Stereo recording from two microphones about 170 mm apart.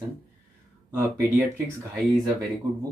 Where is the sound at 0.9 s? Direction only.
5° right (ahead or behind).